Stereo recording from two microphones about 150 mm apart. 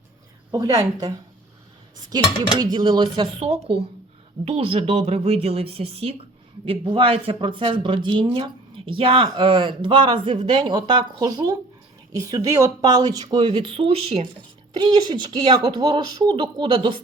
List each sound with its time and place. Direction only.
0.5 s speech: 25° right (ahead or behind)
2.6 s speech: 30° right (ahead or behind)